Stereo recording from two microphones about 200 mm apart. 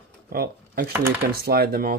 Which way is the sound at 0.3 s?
50° right (ahead or behind).